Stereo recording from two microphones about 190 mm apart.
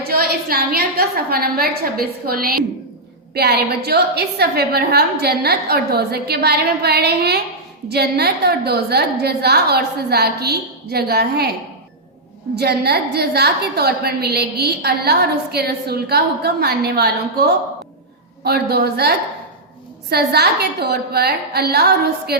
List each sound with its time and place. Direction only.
0.0 s a woman's voice: 55° right (ahead or behind)
12.5 s a woman's voice: 60° right (ahead or behind)